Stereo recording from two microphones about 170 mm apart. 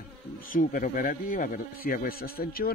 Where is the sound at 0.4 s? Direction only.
50° left (ahead or behind).